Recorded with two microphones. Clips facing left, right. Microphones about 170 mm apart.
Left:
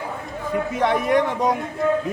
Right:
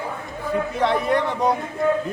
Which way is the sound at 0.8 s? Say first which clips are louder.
Left 1 dB; 10° left (ahead or behind).